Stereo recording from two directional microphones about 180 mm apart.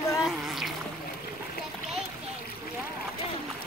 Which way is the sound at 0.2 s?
Centre (ahead or behind).